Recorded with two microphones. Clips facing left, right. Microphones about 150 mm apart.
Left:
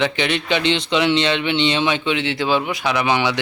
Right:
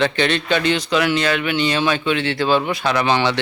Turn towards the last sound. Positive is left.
turn(degrees=15)  # may be behind; listen again after turning